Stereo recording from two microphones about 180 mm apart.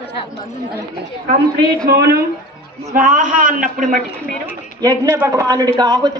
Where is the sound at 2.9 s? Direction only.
45° right (ahead or behind).